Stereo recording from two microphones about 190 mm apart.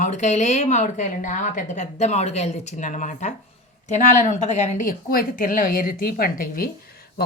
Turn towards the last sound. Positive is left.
turn(degrees=50)  # may be behind; listen again after turning